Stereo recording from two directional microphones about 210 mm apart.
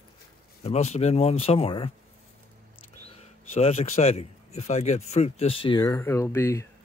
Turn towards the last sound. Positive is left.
turn(degrees=10)  # may be behind; listen again after turning